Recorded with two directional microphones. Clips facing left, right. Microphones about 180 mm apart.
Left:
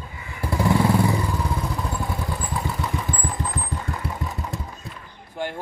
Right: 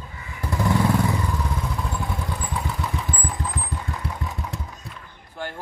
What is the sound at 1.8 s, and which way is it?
Motorcycle, centre (ahead or behind).